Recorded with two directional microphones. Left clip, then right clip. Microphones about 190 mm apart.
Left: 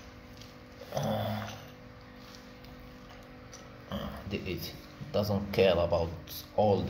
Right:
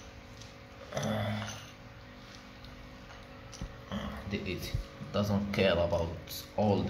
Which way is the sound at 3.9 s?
15° left (ahead or behind).